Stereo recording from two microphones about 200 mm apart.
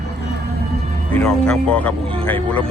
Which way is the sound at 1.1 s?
5° left (ahead or behind).